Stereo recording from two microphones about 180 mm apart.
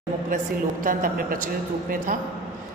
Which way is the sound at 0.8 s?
50° right (ahead or behind).